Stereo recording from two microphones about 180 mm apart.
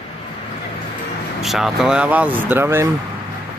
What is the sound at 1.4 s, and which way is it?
Speech, centre (ahead or behind).